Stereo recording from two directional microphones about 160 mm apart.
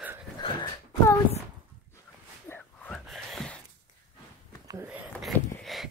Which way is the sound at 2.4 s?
10° left (ahead or behind).